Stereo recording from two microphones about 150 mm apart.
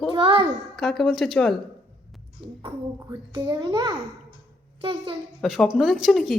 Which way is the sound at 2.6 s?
30° right (ahead or behind).